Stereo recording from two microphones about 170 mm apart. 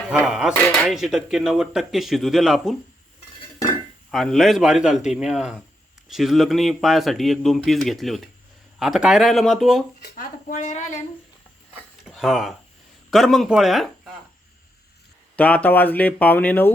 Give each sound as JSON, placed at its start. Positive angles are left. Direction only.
{"t": 0.3, "sound": "speech", "side_deg": -5}
{"t": 4.1, "sound": "speech", "side_deg": 0}
{"t": 10.0, "sound": "speech", "side_deg": 55}
{"t": 12.0, "sound": "speech", "side_deg": 0}
{"t": 15.4, "sound": "speech", "side_deg": 10}